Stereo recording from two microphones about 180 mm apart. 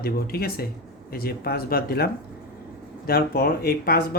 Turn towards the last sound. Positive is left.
turn(degrees=55)  # may be behind; listen again after turning